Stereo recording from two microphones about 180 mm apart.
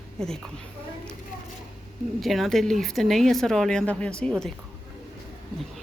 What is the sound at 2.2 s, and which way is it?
Speech, centre (ahead or behind).